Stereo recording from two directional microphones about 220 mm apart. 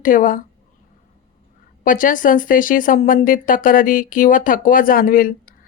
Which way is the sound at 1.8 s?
35° left (ahead or behind).